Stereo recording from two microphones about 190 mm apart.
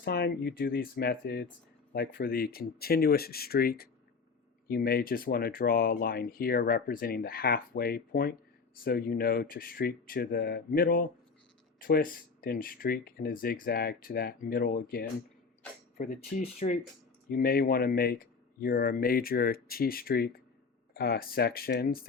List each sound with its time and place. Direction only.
0.0 s speech: 55° left (ahead or behind); by 16.7 s 35° left (ahead or behind)
17.2 s speech: 50° left (ahead or behind)